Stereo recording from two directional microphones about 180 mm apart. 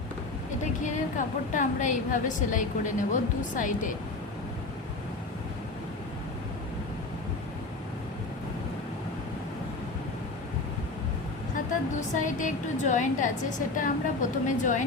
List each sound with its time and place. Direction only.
0.6 s a woman's voice: 45° left (ahead or behind)
11.5 s a woman's voice: 45° left (ahead or behind)